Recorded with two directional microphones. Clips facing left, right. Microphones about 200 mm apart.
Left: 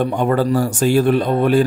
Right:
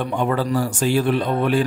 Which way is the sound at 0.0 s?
45° left (ahead or behind).